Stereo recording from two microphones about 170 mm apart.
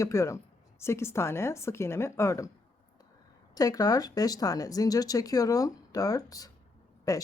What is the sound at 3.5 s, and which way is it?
Speech, 20° left (ahead or behind).